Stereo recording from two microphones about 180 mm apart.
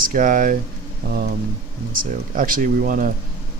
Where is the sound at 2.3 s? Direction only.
50° right (ahead or behind).